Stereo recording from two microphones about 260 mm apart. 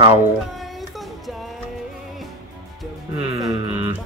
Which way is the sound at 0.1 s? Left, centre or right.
Centre.